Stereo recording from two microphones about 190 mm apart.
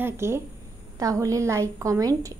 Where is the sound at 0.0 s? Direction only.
15° right (ahead or behind).